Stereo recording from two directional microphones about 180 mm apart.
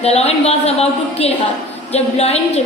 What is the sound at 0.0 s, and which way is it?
A woman's voice, 35° left (ahead or behind).